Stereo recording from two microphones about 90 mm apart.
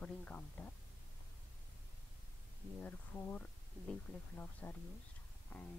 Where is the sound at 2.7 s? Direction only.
20° left (ahead or behind).